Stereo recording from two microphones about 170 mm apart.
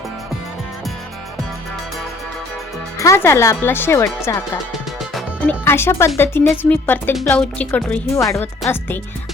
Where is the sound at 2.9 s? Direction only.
15° left (ahead or behind).